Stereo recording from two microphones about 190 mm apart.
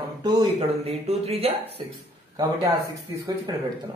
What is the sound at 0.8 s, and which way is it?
Speech, 30° right (ahead or behind).